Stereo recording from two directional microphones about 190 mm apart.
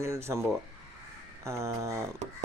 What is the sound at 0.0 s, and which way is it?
Speech, 15° right (ahead or behind).